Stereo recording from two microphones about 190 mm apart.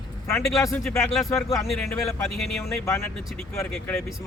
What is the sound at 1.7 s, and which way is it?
Speech, 5° left (ahead or behind).